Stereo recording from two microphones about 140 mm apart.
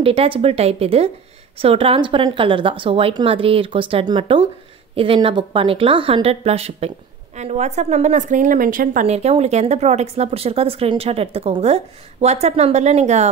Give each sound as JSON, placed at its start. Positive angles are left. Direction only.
{"t": 0.0, "sound": "a woman's voice", "side_deg": -40}
{"t": 9.0, "sound": "speech", "side_deg": -50}